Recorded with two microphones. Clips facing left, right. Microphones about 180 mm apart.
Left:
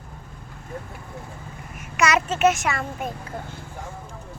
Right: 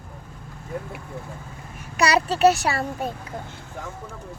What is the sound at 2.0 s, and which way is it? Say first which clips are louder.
A child's voice: right 2 dB; 35° right (ahead or behind).